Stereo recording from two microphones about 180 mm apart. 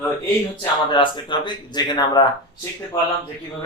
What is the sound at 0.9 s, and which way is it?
Speech, 25° left (ahead or behind).